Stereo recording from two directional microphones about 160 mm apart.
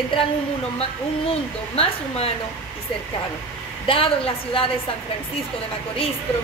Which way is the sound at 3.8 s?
35° left (ahead or behind).